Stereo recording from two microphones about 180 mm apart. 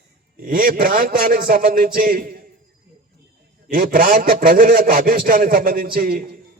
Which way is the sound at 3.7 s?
50° right (ahead or behind).